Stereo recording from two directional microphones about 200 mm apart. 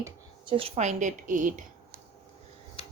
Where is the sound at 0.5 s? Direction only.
30° right (ahead or behind).